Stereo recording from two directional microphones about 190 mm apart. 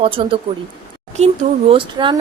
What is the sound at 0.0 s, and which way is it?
Speech, 30° right (ahead or behind).